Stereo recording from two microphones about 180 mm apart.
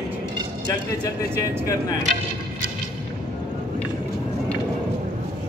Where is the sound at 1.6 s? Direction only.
20° left (ahead or behind).